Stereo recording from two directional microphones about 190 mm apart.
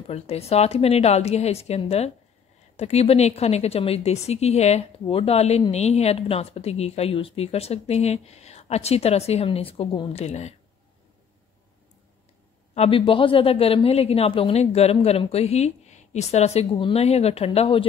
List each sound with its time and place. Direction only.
0.1 s a woman's voice: 35° left (ahead or behind)
12.7 s a woman's voice: 30° left (ahead or behind)